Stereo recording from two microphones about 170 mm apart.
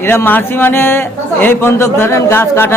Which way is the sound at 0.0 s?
15° left (ahead or behind).